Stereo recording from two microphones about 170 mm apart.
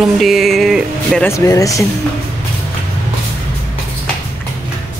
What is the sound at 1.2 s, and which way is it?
Speech, 20° left (ahead or behind).